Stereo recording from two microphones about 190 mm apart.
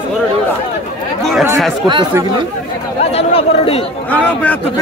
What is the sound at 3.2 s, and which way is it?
Speech, 30° left (ahead or behind).